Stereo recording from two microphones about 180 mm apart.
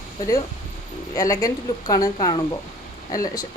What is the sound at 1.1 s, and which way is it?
Speech, 20° left (ahead or behind).